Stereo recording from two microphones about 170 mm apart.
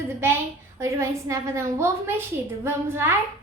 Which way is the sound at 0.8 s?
15° right (ahead or behind).